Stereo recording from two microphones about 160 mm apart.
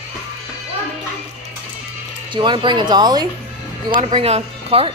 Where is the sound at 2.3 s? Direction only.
30° right (ahead or behind).